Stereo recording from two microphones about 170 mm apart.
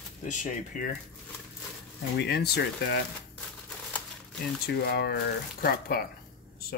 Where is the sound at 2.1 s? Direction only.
75° left (ahead or behind).